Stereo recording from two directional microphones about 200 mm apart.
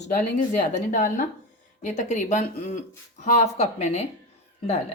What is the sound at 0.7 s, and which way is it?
Speech, 40° left (ahead or behind).